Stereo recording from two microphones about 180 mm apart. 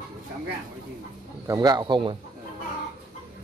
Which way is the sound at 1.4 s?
20° right (ahead or behind).